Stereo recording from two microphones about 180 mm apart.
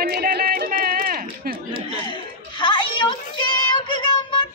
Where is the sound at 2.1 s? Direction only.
25° left (ahead or behind).